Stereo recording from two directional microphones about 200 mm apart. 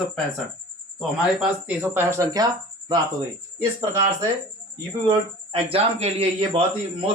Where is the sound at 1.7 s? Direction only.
10° right (ahead or behind).